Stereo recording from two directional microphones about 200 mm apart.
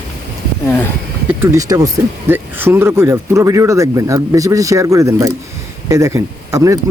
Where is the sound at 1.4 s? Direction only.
15° right (ahead or behind).